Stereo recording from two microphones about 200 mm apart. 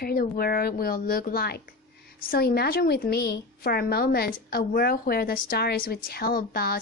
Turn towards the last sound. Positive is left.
turn(degrees=50)  # may be behind; listen again after turning